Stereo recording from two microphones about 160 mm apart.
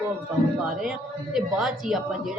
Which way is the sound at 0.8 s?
5° right (ahead or behind).